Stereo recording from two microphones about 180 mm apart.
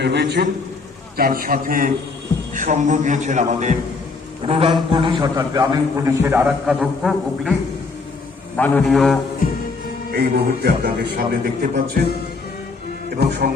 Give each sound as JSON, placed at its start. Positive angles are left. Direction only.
{"t": 0.0, "sound": "a man's voice", "side_deg": -70}
{"t": 1.1, "sound": "a man's voice", "side_deg": -55}
{"t": 4.4, "sound": "a man's voice", "side_deg": -30}
{"t": 8.5, "sound": "a man's voice", "side_deg": 10}
{"t": 10.1, "sound": "a man's voice", "side_deg": -60}
{"t": 13.1, "sound": "speech", "side_deg": -60}